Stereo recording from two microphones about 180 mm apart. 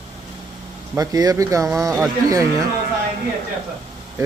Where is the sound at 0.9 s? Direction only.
20° right (ahead or behind).